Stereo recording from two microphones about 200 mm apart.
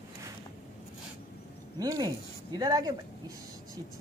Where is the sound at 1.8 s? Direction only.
20° right (ahead or behind).